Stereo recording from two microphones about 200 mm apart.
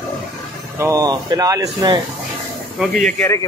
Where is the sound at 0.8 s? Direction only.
15° right (ahead or behind).